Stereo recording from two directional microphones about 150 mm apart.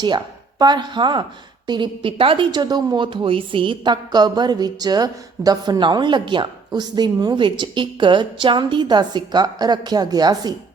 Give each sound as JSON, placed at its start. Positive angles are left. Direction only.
{"t": 0.6, "sound": "a woman's voice", "side_deg": -30}